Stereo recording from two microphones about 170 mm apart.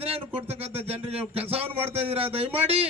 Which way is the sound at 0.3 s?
35° right (ahead or behind).